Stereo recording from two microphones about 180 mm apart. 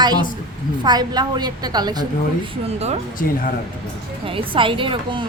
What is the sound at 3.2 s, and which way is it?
Speech, 50° left (ahead or behind).